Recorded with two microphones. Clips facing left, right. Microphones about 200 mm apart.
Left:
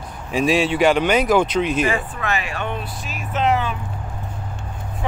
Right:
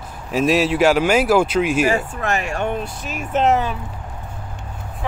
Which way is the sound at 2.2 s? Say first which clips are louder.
Right 3 dB; 45° right (ahead or behind).